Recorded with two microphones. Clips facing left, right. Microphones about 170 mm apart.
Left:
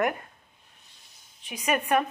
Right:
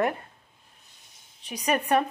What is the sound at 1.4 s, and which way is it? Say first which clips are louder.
Speech: right 1 dB; 35° right (ahead or behind).